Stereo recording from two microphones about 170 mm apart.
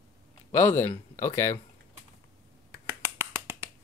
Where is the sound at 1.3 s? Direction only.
15° left (ahead or behind).